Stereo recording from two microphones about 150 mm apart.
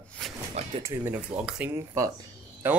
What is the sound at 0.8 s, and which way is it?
Speech, 20° right (ahead or behind).